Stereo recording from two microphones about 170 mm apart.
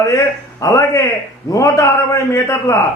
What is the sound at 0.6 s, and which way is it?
A man's voice, 20° left (ahead or behind).